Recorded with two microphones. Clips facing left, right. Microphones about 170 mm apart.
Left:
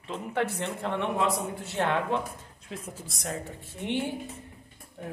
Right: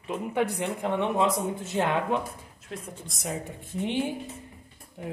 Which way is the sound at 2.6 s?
Centre (ahead or behind).